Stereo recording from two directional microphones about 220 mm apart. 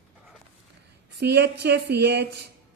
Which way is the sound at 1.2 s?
50° right (ahead or behind).